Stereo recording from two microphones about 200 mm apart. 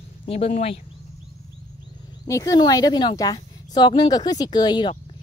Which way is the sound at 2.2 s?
15° left (ahead or behind).